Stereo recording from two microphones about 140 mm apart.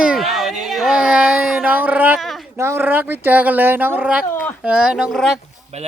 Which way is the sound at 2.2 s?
Centre (ahead or behind).